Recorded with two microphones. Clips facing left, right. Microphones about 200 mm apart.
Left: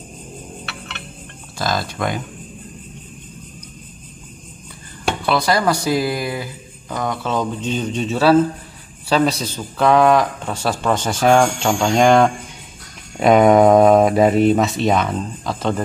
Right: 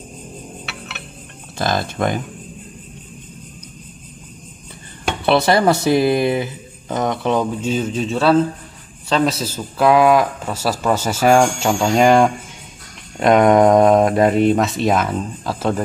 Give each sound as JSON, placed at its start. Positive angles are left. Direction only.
{"t": 0.7, "sound": "a sound", "side_deg": -5}
{"t": 5.2, "sound": "speech", "side_deg": -25}
{"t": 7.3, "sound": "a man's voice", "side_deg": -5}